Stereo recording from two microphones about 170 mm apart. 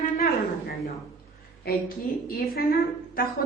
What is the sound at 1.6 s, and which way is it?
A woman's voice, 65° left (ahead or behind).